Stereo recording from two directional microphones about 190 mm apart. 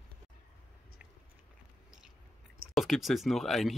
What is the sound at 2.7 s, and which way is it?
Speech, centre (ahead or behind).